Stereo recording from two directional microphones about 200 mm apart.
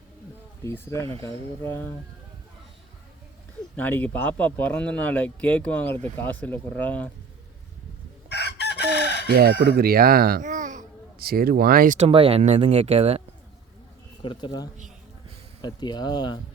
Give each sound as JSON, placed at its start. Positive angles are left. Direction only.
{"t": 0.6, "sound": "speech", "side_deg": 15}
{"t": 3.8, "sound": "speech", "side_deg": 10}
{"t": 8.3, "sound": "chicken", "side_deg": 55}
{"t": 9.2, "sound": "speech", "side_deg": -50}
{"t": 11.9, "sound": "speech", "side_deg": -30}
{"t": 14.2, "sound": "speech", "side_deg": 20}